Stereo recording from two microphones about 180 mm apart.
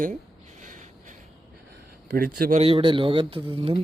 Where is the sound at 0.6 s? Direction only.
45° right (ahead or behind).